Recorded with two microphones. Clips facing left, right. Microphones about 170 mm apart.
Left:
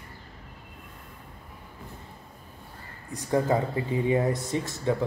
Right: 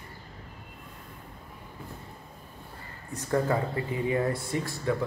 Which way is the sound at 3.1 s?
20° left (ahead or behind).